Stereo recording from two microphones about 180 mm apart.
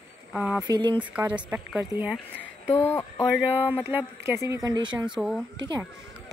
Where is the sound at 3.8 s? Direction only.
10° right (ahead or behind).